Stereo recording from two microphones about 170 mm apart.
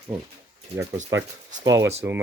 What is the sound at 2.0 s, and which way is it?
Speech, 10° right (ahead or behind).